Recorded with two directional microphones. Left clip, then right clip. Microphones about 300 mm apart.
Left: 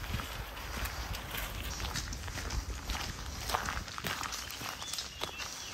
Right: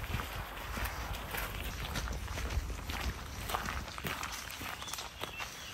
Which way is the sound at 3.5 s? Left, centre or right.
Centre.